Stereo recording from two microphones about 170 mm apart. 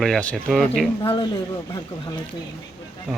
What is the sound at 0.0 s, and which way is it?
Speech, 5° left (ahead or behind).